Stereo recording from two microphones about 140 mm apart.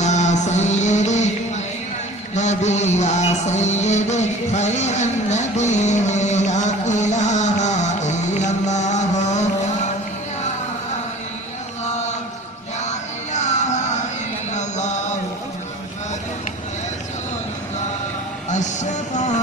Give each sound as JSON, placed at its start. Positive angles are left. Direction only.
{"t": 0.0, "sound": "music", "side_deg": 55}
{"t": 12.8, "sound": "music", "side_deg": 55}
{"t": 14.5, "sound": "a sound", "side_deg": 60}
{"t": 18.5, "sound": "music", "side_deg": 60}